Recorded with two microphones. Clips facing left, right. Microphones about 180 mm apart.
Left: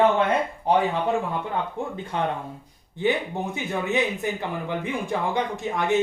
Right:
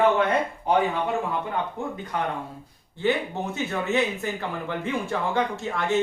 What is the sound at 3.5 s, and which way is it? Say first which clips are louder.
Speech: right 1 dB; 15° left (ahead or behind).